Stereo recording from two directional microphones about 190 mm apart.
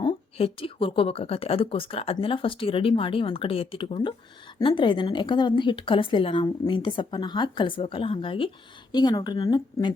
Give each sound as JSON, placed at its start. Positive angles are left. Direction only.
{"t": 0.0, "sound": "a woman's voice", "side_deg": 25}